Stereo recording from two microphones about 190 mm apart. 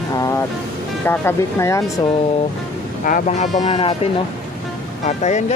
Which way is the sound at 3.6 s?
25° left (ahead or behind).